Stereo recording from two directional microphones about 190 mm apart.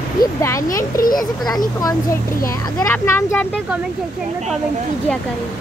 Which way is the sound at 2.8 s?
10° left (ahead or behind).